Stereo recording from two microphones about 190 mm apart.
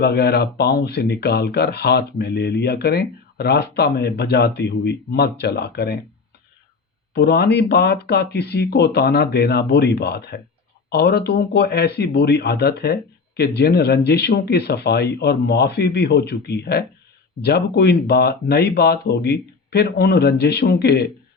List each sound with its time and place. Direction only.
0.0 s speech: 55° left (ahead or behind)
7.1 s speech: 60° left (ahead or behind)